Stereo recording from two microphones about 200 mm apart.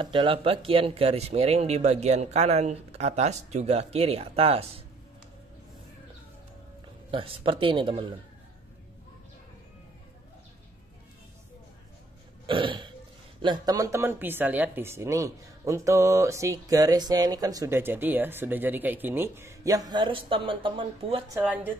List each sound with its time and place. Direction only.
0.0 s speech: 25° right (ahead or behind)
7.1 s speech: 25° right (ahead or behind)
12.4 s burping: 25° right (ahead or behind)
13.4 s speech: 20° right (ahead or behind)
21.3 s speech: 10° right (ahead or behind)